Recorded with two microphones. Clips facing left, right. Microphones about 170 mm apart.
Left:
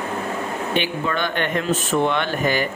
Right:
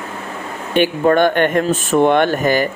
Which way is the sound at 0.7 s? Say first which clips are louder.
Right 12 dB; 50° right (ahead or behind).